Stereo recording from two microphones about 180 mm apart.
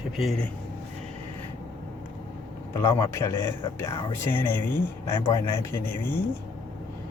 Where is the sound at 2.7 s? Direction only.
20° left (ahead or behind).